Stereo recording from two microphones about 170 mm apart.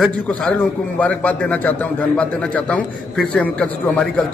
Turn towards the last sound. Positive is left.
turn(degrees=5)  # may be behind; listen again after turning